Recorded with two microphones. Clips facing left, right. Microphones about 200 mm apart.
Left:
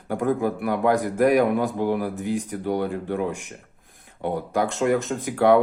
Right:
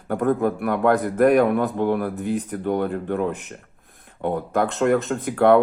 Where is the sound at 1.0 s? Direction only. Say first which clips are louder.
Right 2 dB; 55° right (ahead or behind).